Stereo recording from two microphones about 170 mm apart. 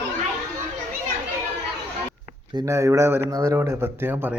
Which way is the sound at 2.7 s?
15° right (ahead or behind).